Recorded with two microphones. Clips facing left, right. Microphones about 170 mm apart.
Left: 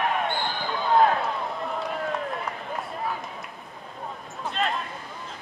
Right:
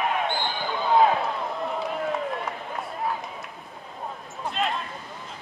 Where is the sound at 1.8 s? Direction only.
Centre (ahead or behind).